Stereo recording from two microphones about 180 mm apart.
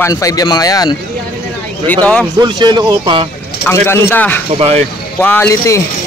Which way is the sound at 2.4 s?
25° right (ahead or behind).